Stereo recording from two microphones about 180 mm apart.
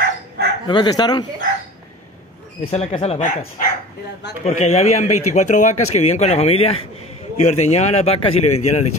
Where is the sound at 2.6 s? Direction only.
35° left (ahead or behind).